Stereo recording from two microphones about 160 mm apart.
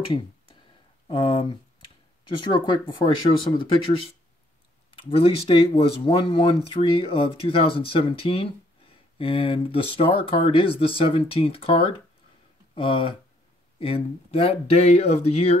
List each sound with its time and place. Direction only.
1.0 s speech: 35° left (ahead or behind)
4.9 s speech: 35° left (ahead or behind)